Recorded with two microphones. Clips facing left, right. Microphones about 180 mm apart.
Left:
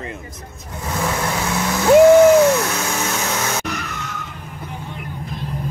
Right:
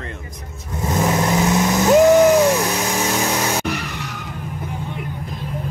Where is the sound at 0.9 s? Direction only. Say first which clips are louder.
Right 4 dB; 20° right (ahead or behind).